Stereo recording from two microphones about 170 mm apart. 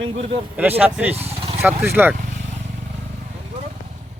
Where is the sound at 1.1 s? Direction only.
35° right (ahead or behind).